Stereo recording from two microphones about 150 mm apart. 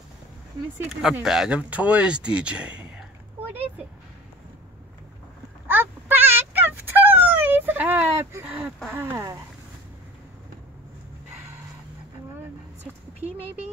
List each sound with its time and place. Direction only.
1.2 s speech: 5° right (ahead or behind)
5.7 s a sound: 15° right (ahead or behind)
8.9 s speech: 20° right (ahead or behind)